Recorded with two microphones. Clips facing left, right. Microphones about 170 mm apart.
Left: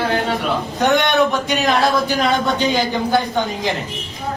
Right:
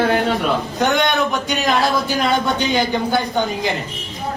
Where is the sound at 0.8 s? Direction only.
Centre (ahead or behind).